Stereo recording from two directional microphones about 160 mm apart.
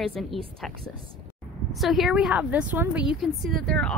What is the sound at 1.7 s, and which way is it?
Speech, centre (ahead or behind).